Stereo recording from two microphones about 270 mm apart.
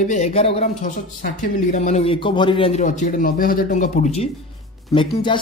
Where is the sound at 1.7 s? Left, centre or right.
Left.